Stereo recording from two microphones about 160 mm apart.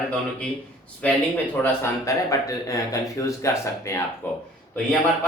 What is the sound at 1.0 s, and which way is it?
A man's voice, 10° left (ahead or behind).